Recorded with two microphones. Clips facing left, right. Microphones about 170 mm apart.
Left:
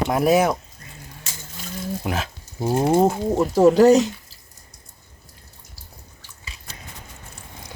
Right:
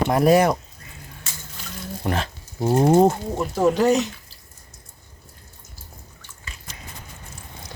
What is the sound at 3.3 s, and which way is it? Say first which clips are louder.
Speech: left 5 dB; 40° left (ahead or behind).